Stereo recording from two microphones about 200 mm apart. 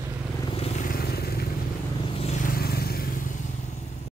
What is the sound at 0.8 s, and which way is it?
Vehicle, 50° left (ahead or behind).